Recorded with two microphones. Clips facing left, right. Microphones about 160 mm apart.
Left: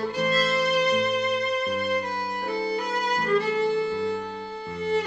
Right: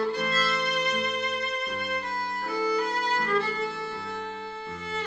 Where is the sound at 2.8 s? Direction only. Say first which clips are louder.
Left 1 dB; 15° left (ahead or behind).